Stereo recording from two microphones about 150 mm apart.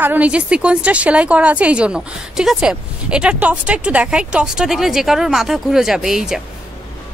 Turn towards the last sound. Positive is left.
turn(degrees=-5)  # may be behind; listen again after turning